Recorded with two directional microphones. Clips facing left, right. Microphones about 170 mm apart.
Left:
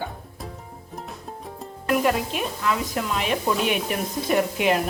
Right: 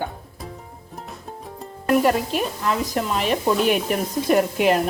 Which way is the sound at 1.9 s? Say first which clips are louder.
Right 4 dB; 40° right (ahead or behind).